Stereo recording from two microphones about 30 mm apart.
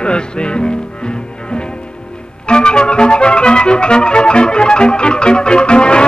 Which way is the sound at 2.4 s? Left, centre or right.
Left.